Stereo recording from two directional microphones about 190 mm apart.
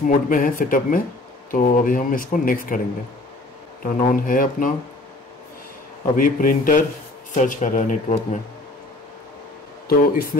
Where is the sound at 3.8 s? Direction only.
45° left (ahead or behind).